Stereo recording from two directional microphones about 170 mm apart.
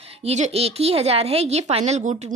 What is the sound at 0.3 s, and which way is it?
Speech, 40° right (ahead or behind).